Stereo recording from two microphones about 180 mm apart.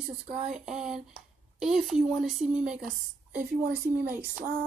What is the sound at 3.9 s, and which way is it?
Speech, 10° right (ahead or behind).